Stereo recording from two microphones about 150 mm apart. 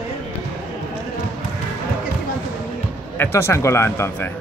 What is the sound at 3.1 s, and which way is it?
Speech, 15° left (ahead or behind).